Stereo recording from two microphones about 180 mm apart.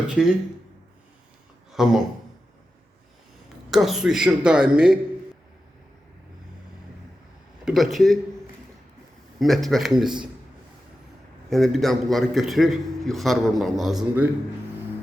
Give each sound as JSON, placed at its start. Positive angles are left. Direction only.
{"t": 0.1, "sound": "a man's voice", "side_deg": -5}
{"t": 1.7, "sound": "speech", "side_deg": 0}
{"t": 3.7, "sound": "a man's voice", "side_deg": 0}
{"t": 7.6, "sound": "a man's voice", "side_deg": 0}
{"t": 9.4, "sound": "a man's voice", "side_deg": 0}
{"t": 11.4, "sound": "a man's voice", "side_deg": 0}